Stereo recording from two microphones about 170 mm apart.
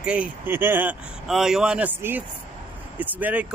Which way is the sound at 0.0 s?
5° right (ahead or behind).